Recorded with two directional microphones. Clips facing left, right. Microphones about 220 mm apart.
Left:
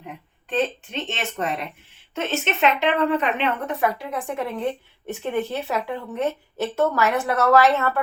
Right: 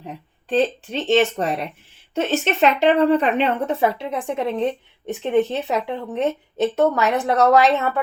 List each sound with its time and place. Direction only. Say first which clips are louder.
0.4 s a woman's voice: right 4 dB; 35° right (ahead or behind); by 7.9 s 20° right (ahead or behind)